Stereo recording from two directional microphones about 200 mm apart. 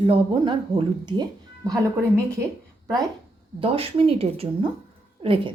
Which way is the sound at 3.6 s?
30° right (ahead or behind).